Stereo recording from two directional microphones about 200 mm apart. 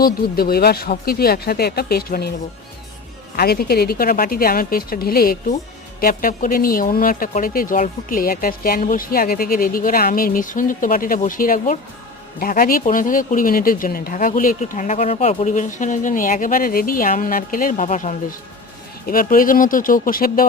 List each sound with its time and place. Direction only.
0.0 s speech: 50° left (ahead or behind)
3.3 s speech: 50° left (ahead or behind)